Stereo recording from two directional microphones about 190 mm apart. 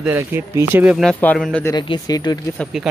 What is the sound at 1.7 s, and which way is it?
Speech, 20° left (ahead or behind).